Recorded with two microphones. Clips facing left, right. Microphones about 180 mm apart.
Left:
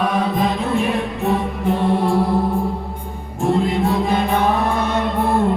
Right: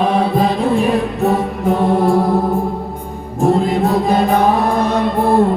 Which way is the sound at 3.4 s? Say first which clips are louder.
Right 4 dB; 40° right (ahead or behind).